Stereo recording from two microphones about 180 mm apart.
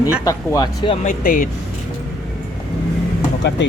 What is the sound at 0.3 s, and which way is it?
Speech, 20° left (ahead or behind).